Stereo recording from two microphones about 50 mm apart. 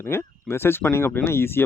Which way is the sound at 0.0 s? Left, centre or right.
Left.